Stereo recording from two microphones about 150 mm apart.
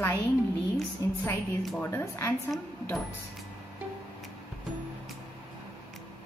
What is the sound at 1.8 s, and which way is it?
Speech, 15° left (ahead or behind).